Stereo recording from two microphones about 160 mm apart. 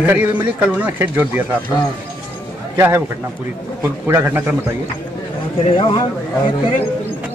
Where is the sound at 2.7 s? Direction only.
15° right (ahead or behind).